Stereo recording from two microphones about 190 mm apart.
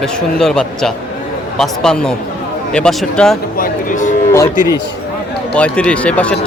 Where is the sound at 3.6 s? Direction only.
40° left (ahead or behind).